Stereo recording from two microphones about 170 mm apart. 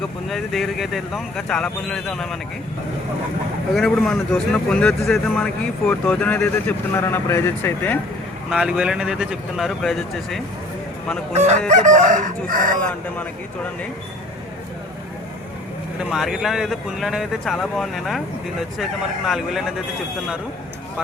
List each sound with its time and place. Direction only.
0.3 s speech: centre (ahead or behind)
3.8 s speech: centre (ahead or behind)
8.4 s speech: 5° right (ahead or behind)
11.3 s fowl: 40° right (ahead or behind)
11.7 s crowing: 50° right (ahead or behind)
12.8 s speech: 10° left (ahead or behind)
16.0 s speech: centre (ahead or behind)